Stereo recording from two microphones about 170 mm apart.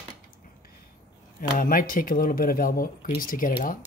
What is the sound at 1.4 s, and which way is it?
Speech, 55° left (ahead or behind).